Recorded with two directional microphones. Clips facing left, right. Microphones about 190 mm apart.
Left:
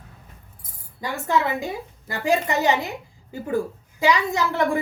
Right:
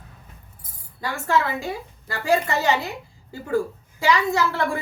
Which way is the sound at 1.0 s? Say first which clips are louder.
Even; 20° left (ahead or behind).